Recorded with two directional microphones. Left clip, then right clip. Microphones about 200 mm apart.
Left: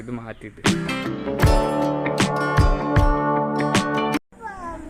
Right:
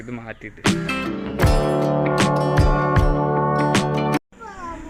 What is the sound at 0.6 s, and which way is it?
Music, centre (ahead or behind).